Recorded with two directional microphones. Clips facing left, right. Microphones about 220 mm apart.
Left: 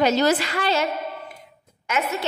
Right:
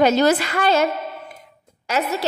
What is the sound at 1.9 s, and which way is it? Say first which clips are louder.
Speech: right 3 dB; 35° right (ahead or behind).